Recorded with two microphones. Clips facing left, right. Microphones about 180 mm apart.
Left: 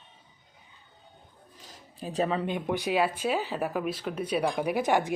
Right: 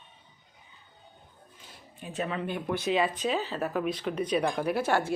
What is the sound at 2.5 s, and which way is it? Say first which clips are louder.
Speech: left 1 dB; 15° left (ahead or behind).